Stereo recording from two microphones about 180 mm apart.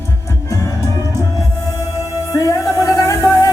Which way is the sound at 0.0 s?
15° left (ahead or behind).